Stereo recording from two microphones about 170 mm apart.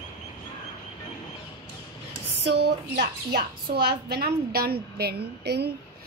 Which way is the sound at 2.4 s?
80° right.